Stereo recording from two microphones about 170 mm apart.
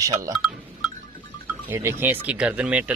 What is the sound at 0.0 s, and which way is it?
Speech, 20° right (ahead or behind).